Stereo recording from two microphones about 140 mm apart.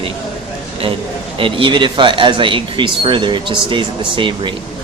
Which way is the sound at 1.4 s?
40° right (ahead or behind).